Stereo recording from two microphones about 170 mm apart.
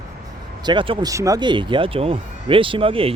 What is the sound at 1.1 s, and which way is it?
Speech, 20° right (ahead or behind).